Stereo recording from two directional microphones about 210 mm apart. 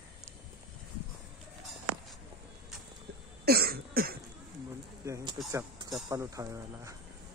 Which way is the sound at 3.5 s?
45° right (ahead or behind).